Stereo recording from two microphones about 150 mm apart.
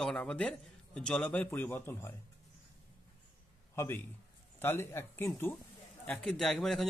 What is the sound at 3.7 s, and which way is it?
A man's voice, 20° left (ahead or behind).